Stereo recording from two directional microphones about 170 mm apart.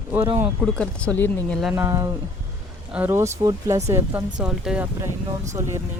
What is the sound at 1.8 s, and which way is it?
Speech, 20° right (ahead or behind).